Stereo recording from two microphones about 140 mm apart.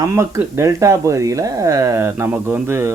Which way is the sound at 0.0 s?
20° right (ahead or behind).